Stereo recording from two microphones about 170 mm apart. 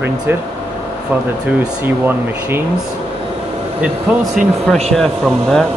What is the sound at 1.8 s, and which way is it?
Speech, 10° right (ahead or behind).